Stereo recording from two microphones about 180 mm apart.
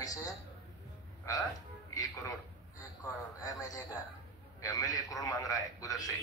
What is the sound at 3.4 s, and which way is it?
A man's voice, 20° left (ahead or behind).